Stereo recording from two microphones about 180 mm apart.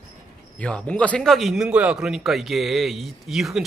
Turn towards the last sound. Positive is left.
turn(degrees=0)  # may be behind; listen again after turning